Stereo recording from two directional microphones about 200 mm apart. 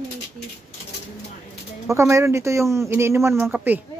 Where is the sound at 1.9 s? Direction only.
15° right (ahead or behind).